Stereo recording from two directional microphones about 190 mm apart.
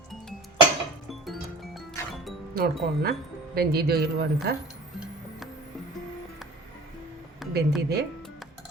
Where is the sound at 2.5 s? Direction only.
50° right (ahead or behind).